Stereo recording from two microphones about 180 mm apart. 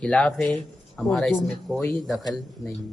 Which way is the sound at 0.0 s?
5° left (ahead or behind).